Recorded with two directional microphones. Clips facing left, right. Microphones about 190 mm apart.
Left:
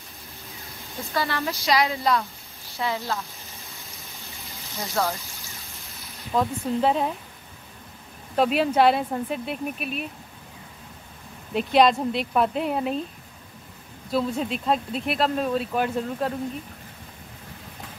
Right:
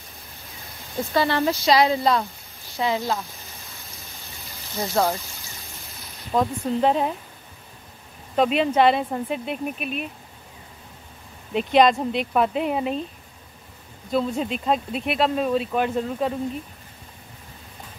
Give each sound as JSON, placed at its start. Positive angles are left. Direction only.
{"t": 0.9, "sound": "speech", "side_deg": -25}
{"t": 2.8, "sound": "speech", "side_deg": -20}
{"t": 5.0, "sound": "speech", "side_deg": -20}
{"t": 6.3, "sound": "speech", "side_deg": 0}
{"t": 8.4, "sound": "speech", "side_deg": 5}
{"t": 11.5, "sound": "speech", "side_deg": 0}
{"t": 14.1, "sound": "speech", "side_deg": 0}